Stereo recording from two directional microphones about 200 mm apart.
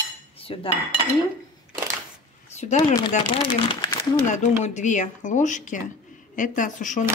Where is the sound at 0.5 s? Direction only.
25° left (ahead or behind).